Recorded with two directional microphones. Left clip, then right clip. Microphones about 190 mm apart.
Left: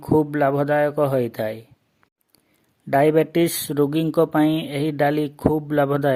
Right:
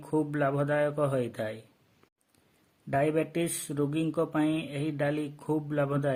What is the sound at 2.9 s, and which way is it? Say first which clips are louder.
Speech: left 11 dB; 45° left (ahead or behind).